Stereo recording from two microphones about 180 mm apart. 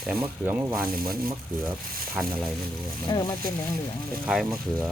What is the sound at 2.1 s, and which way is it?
Speech, 5° right (ahead or behind).